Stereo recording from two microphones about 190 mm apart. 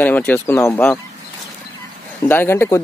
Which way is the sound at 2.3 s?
10° left (ahead or behind).